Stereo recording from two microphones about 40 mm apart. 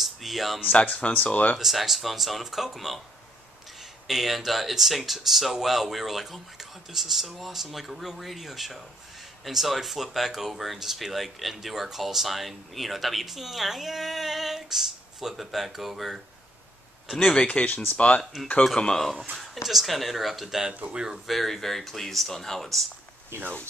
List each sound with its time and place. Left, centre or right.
0.0 s speech: centre
1.1 s speech: left
1.6 s speech: centre
4.1 s speech: centre
17.3 s speech: left
19.3 s a sound: centre
19.6 s speech: centre
20.4 s speech: centre
21.3 s speech: centre